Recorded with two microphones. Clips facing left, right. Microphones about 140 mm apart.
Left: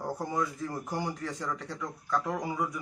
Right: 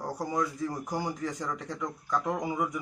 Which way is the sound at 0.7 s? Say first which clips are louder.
Right 1 dB; 15° right (ahead or behind).